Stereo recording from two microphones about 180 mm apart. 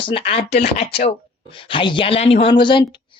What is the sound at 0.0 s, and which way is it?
Speech, 30° left (ahead or behind).